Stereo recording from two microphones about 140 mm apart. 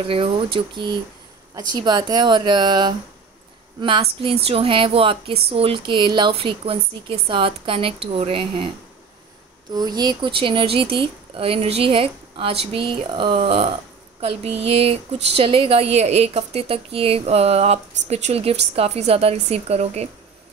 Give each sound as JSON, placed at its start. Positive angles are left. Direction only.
{"t": 0.0, "sound": "speech", "side_deg": -40}